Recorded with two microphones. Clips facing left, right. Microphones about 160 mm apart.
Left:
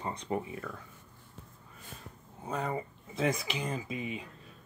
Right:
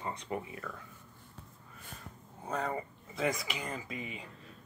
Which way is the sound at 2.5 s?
15° left (ahead or behind).